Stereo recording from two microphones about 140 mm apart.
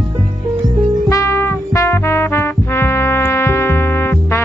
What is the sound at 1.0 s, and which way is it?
Music, 20° left (ahead or behind).